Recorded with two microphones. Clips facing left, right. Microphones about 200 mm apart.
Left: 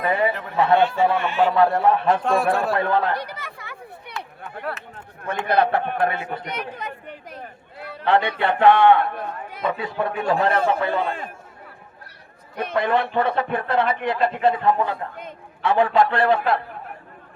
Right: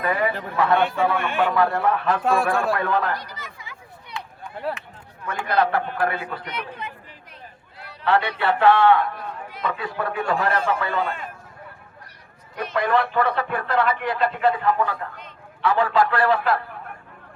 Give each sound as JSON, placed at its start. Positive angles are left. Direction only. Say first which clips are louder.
{"t": 0.0, "sound": "a sound", "louder": "left 2 dB", "side_deg": 25}
{"t": 0.5, "sound": "a man's voice", "louder": "left 2 dB", "side_deg": 25}
{"t": 0.8, "sound": "speech", "louder": "left 2 dB", "side_deg": -55}
{"t": 1.5, "sound": "speech", "louder": "left 3 dB", "side_deg": 25}
{"t": 2.2, "sound": "a man's voice", "louder": "even", "side_deg": 0}
{"t": 2.7, "sound": "speech", "louder": "left 2 dB", "side_deg": 30}
{"t": 3.2, "sound": "a sound", "louder": "left 6 dB", "side_deg": 60}
{"t": 5.3, "sound": "speech", "louder": "left 2 dB", "side_deg": 25}
{"t": 6.5, "sound": "speech", "louder": "left 2 dB", "side_deg": 45}
{"t": 7.3, "sound": "a sound", "louder": "left 8 dB", "side_deg": 50}
{"t": 8.0, "sound": "speech", "louder": "left 1 dB", "side_deg": 25}
{"t": 12.7, "sound": "speech", "louder": "even", "side_deg": 25}
{"t": 15.1, "sound": "a man's voice", "louder": "left 6 dB", "side_deg": 50}
{"t": 15.6, "sound": "speech", "louder": "left 2 dB", "side_deg": 25}